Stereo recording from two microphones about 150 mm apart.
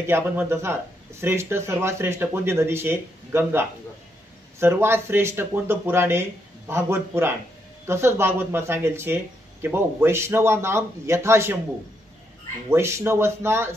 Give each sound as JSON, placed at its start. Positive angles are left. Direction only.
{"t": 0.0, "sound": "speech", "side_deg": -15}
{"t": 12.6, "sound": "speech", "side_deg": -15}